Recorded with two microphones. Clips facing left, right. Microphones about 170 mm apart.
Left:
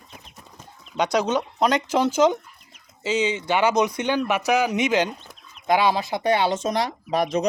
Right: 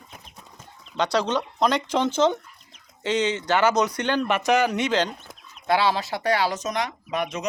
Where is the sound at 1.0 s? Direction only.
10° left (ahead or behind).